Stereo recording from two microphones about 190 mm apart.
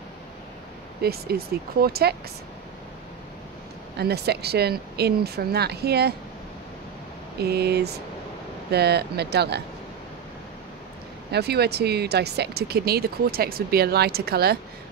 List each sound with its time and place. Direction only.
1.0 s speech: 55° right (ahead or behind)
4.0 s speech: 60° right (ahead or behind)
7.3 s speech: 60° right (ahead or behind)
11.3 s speech: 60° right (ahead or behind)